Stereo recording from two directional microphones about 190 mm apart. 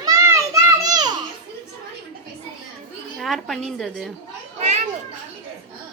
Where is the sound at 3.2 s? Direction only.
Centre (ahead or behind).